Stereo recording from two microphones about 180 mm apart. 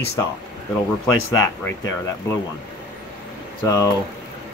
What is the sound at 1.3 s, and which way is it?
Speech, 20° left (ahead or behind).